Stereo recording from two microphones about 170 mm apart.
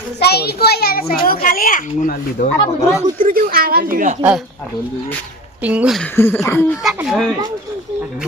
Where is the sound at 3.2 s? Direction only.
60° right (ahead or behind).